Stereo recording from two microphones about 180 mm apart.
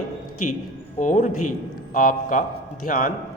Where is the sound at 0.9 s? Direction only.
45° left (ahead or behind).